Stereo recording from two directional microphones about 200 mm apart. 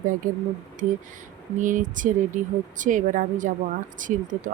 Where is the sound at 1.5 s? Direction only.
40° right (ahead or behind).